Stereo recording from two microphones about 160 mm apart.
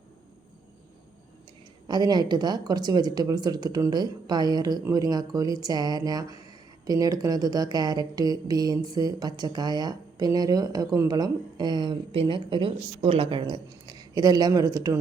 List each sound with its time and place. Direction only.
1.9 s speech: 25° right (ahead or behind)